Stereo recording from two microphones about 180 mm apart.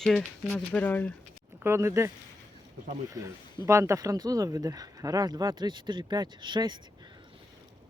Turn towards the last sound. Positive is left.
turn(degrees=-25)  # may be behind; listen again after turning